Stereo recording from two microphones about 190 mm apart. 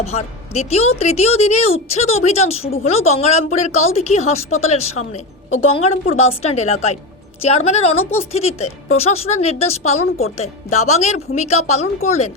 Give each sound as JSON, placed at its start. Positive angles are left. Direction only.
{"t": 0.0, "sound": "a woman's voice", "side_deg": 35}